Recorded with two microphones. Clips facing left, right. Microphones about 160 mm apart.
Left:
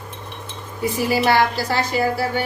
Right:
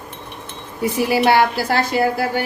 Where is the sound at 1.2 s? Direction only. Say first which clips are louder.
Right 3 dB; 55° right (ahead or behind).